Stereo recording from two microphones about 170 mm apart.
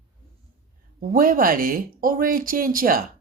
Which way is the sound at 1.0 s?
55° right (ahead or behind).